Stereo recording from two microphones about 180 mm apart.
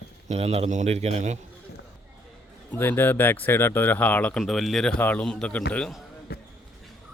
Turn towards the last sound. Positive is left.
turn(degrees=60)  # may be behind; listen again after turning